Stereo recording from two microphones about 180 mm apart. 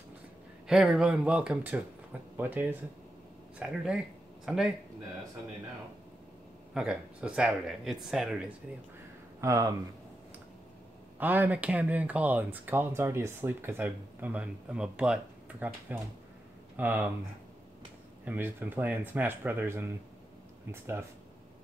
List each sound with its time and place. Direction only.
0.7 s speech: 5° right (ahead or behind)
6.7 s speech: 5° right (ahead or behind)
9.4 s speech: 15° right (ahead or behind)
11.1 s speech: 10° right (ahead or behind)
18.2 s speech: 10° right (ahead or behind)